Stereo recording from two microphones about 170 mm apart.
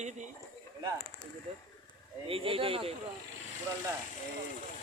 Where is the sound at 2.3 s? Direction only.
35° right (ahead or behind).